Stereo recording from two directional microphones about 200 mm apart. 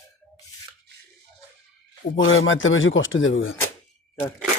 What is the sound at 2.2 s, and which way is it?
Speech, 75° left (ahead or behind).